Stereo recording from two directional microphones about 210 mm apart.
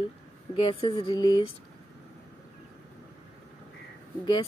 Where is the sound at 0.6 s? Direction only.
25° left (ahead or behind).